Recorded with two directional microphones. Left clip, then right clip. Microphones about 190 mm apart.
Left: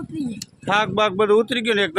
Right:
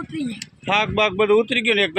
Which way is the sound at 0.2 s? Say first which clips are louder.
Right 1 dB; 5° left (ahead or behind).